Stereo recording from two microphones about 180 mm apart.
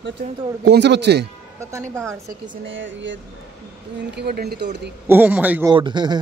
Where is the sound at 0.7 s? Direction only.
70° right (ahead or behind).